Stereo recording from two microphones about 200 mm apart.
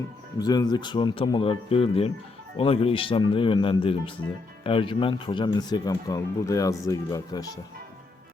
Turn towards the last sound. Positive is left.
turn(degrees=15)  # may be behind; listen again after turning